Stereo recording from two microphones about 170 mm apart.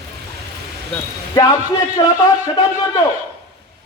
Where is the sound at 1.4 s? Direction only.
25° left (ahead or behind).